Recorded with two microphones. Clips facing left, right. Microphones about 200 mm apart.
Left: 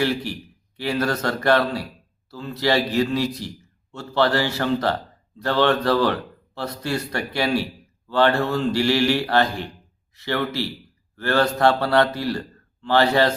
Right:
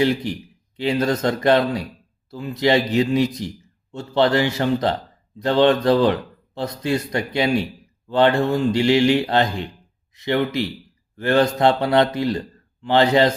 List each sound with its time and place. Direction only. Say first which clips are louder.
0.0 s a man's voice: right 4 dB; 20° right (ahead or behind)